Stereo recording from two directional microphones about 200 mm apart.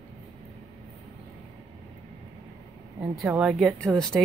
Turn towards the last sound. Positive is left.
turn(degrees=5)  # may be behind; listen again after turning